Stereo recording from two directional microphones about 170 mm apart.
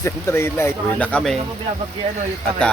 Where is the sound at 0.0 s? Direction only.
15° left (ahead or behind).